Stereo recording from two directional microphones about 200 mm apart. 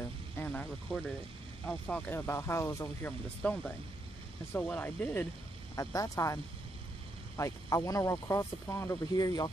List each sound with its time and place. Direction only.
0.4 s speech: 5° left (ahead or behind)